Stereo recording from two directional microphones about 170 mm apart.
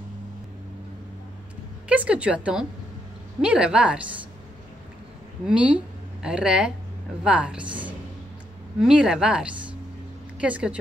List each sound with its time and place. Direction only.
1.9 s a woman's voice: 5° right (ahead or behind)
5.5 s a woman's voice: 5° right (ahead or behind)
7.6 s a woman's voice: 30° right (ahead or behind)
8.8 s a woman's voice: 5° right (ahead or behind)